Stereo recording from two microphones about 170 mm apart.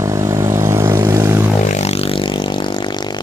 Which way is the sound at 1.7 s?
40° left (ahead or behind).